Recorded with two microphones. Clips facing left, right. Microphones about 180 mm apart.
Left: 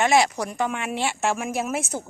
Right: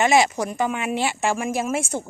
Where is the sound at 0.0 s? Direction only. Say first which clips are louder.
Right 2 dB; centre (ahead or behind).